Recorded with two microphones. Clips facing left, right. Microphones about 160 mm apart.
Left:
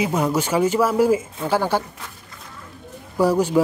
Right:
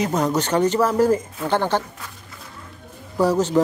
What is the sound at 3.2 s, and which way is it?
Speech, 10° left (ahead or behind).